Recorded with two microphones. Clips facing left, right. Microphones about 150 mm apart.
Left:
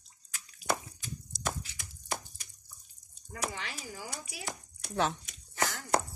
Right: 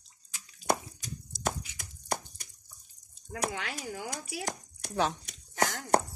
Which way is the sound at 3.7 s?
50° right (ahead or behind).